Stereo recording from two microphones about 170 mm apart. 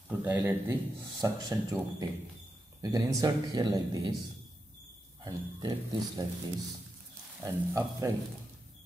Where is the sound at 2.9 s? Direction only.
25° right (ahead or behind).